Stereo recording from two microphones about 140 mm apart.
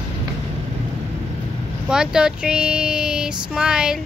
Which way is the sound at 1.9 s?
5° right (ahead or behind).